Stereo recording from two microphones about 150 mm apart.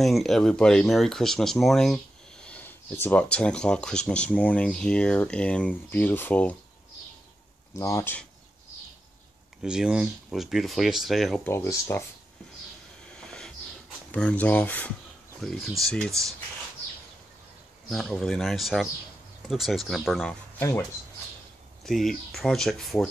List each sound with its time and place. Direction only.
0.0 s speech: centre (ahead or behind)
7.8 s speech: 15° left (ahead or behind)
9.6 s speech: 5° right (ahead or behind)
11.4 s speech: 15° left (ahead or behind)
14.1 s speech: 10° left (ahead or behind)
17.8 s speech: centre (ahead or behind)
21.8 s speech: centre (ahead or behind)